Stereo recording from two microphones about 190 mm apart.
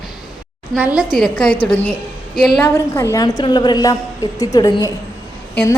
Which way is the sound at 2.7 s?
15° left (ahead or behind).